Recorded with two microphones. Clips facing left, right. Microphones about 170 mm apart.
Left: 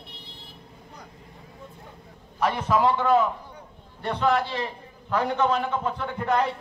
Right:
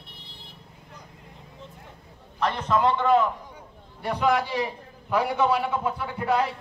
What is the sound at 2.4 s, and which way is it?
Speech, 10° left (ahead or behind).